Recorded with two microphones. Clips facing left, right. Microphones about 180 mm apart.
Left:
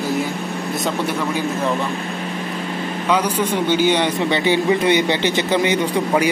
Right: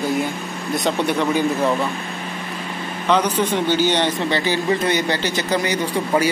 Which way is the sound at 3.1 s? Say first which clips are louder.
Right 1 dB; 10° left (ahead or behind).